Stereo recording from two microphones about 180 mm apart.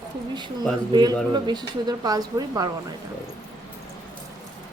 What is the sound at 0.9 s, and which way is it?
Speech, 25° right (ahead or behind).